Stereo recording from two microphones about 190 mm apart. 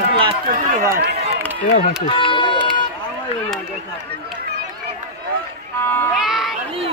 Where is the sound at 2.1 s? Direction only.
25° left (ahead or behind).